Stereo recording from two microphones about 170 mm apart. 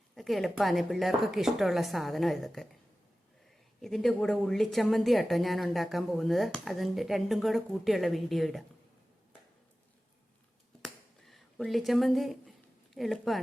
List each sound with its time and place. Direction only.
0.2 s a woman's voice: centre (ahead or behind)
3.8 s a woman's voice: centre (ahead or behind)
10.8 s finger snapping: centre (ahead or behind)